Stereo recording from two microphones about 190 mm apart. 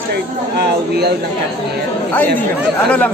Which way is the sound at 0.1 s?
60° right (ahead or behind).